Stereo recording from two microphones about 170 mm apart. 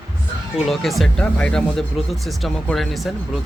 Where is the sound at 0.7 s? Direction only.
Centre (ahead or behind).